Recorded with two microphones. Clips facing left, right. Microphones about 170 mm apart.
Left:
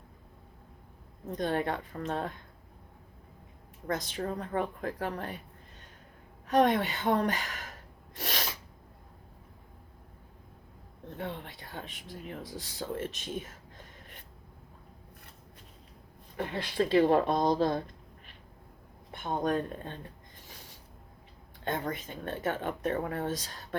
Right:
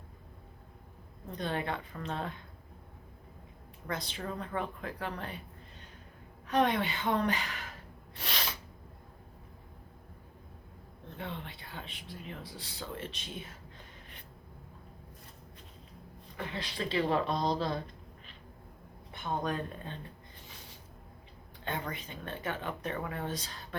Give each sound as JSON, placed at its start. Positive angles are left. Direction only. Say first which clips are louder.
{"t": 1.3, "sound": "speech", "louder": "left 4 dB", "side_deg": 45}
{"t": 3.8, "sound": "speech", "louder": "left 5 dB", "side_deg": 45}
{"t": 6.5, "sound": "speech", "louder": "left 4 dB", "side_deg": 45}
{"t": 8.1, "sound": "sneeze", "louder": "left 3 dB", "side_deg": 45}
{"t": 11.2, "sound": "speech", "louder": "left 3 dB", "side_deg": 45}
{"t": 16.4, "sound": "speech", "louder": "left 7 dB", "side_deg": 50}
{"t": 19.4, "sound": "speech", "louder": "left 9 dB", "side_deg": 50}
{"t": 21.6, "sound": "speech", "louder": "left 4 dB", "side_deg": 45}